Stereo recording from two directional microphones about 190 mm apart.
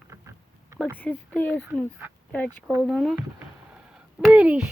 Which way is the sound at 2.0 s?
10° right (ahead or behind).